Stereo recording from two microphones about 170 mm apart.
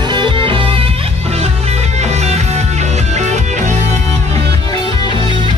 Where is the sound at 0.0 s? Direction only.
25° right (ahead or behind); by 3.7 s 45° right (ahead or behind).